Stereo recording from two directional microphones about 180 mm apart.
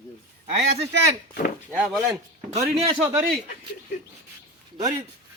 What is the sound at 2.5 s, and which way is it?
Speech, 35° right (ahead or behind).